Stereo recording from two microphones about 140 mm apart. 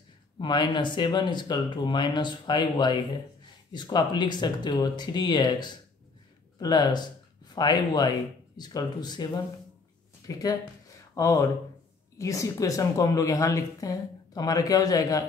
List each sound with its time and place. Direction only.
0.4 s speech: 35° left (ahead or behind)